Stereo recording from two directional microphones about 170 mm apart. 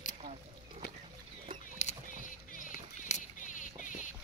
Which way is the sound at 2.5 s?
50° left (ahead or behind).